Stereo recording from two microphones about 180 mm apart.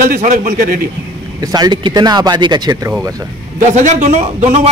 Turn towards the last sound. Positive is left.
turn(degrees=-40)  # may be behind; listen again after turning